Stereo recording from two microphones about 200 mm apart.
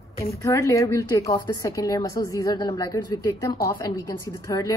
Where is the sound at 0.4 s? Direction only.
15° left (ahead or behind).